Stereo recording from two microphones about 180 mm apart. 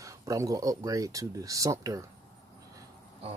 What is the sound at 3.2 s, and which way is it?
Speech, 35° right (ahead or behind).